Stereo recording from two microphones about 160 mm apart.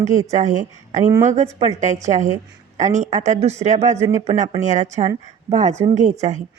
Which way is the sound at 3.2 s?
45° right (ahead or behind).